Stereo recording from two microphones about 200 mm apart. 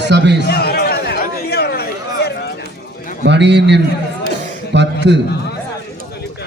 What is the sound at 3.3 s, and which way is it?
A man's voice, 60° right (ahead or behind).